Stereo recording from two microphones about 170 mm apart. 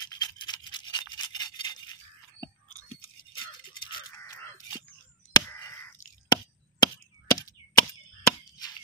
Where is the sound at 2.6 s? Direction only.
50° left (ahead or behind).